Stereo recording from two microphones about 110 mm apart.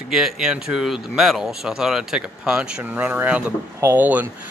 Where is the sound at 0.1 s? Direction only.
5° right (ahead or behind).